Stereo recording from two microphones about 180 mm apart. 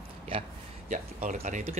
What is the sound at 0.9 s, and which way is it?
Speech, 40° right (ahead or behind).